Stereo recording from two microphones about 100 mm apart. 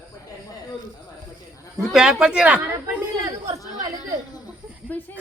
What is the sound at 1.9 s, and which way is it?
Speech, 5° right (ahead or behind).